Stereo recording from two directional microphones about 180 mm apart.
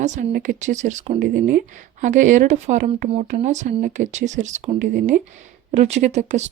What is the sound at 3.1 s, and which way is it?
Speech, 35° right (ahead or behind).